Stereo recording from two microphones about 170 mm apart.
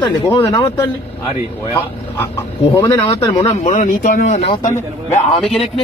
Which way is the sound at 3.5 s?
45° left (ahead or behind).